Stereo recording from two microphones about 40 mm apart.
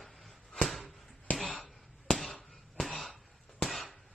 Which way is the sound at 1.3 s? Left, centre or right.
Left.